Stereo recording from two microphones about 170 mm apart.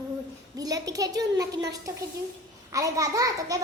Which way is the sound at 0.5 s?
20° right (ahead or behind).